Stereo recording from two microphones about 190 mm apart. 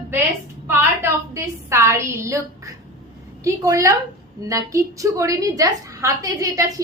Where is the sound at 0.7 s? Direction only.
15° right (ahead or behind).